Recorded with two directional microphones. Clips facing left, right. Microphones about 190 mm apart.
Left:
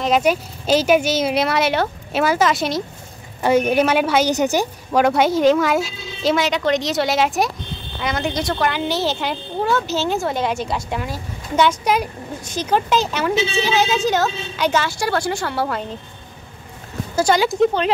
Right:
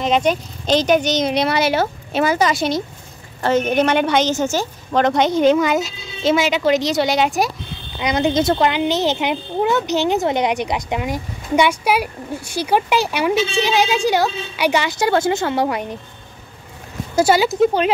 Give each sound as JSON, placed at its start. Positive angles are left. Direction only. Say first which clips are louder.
{"t": 0.0, "sound": "a woman's voice", "louder": "even", "side_deg": 5}
{"t": 4.3, "sound": "speech", "louder": "left 1 dB", "side_deg": 15}
{"t": 8.0, "sound": "speech", "louder": "right 6 dB", "side_deg": -20}
{"t": 17.1, "sound": "speech", "louder": "right 2 dB", "side_deg": -5}